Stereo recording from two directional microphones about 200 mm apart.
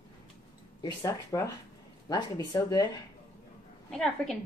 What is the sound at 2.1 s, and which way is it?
Speech, 20° left (ahead or behind).